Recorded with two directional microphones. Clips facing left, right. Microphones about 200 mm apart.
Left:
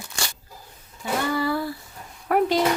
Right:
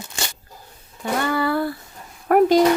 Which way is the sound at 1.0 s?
60° right (ahead or behind).